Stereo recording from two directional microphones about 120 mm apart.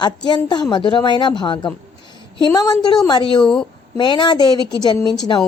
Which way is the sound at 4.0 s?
40° left (ahead or behind).